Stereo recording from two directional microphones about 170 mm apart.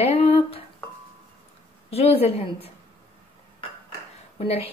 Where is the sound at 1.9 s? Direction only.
35° left (ahead or behind).